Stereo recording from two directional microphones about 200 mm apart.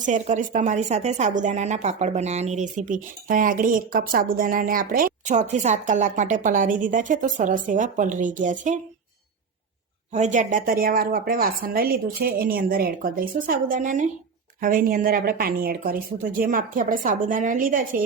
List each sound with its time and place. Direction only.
0.0 s a woman's voice: 40° right (ahead or behind)
10.1 s a woman's voice: 35° right (ahead or behind)